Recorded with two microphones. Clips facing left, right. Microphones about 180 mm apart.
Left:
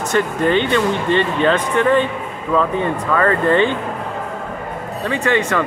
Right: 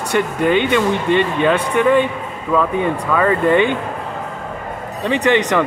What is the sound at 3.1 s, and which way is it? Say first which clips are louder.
Speech: right 1 dB; 10° right (ahead or behind).